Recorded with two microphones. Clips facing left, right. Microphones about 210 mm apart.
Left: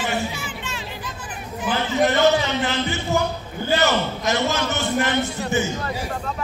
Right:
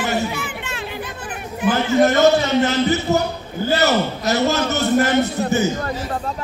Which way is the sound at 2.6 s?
40° right (ahead or behind).